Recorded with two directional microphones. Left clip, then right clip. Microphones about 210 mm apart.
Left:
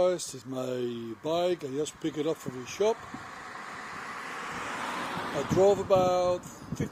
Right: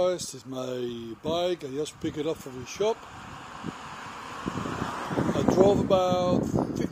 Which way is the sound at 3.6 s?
35° left (ahead or behind).